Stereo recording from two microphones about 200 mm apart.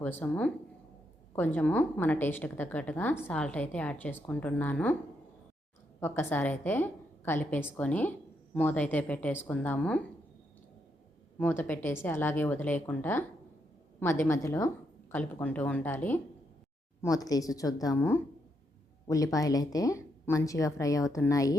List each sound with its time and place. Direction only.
0.0 s speech: 10° left (ahead or behind)
6.0 s speech: 10° left (ahead or behind)
11.3 s speech: 10° left (ahead or behind)